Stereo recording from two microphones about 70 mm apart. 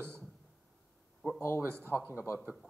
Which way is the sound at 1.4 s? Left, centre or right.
Left.